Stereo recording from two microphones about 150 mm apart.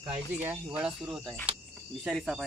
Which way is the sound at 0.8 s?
5° right (ahead or behind).